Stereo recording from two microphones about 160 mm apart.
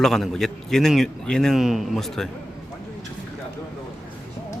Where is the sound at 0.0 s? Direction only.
Centre (ahead or behind).